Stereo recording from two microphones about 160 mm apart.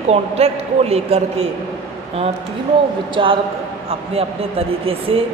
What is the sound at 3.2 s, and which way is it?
A woman's voice, 30° right (ahead or behind).